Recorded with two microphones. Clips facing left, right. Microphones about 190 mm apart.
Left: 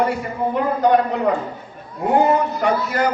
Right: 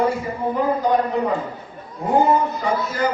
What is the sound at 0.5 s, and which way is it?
Speech, 70° left (ahead or behind).